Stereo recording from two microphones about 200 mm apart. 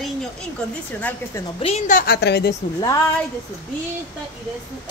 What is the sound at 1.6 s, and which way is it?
Speech, 30° left (ahead or behind).